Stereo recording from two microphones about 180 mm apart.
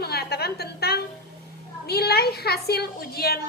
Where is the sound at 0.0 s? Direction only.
60° left (ahead or behind).